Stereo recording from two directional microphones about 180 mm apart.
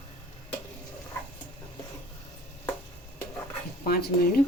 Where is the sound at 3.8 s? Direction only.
55° left (ahead or behind).